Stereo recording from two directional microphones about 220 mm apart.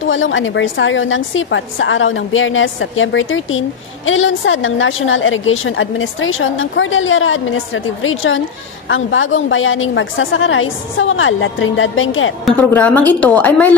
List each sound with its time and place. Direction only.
0.1 s a woman's voice: 60° left (ahead or behind)
12.4 s a woman's voice: 5° left (ahead or behind)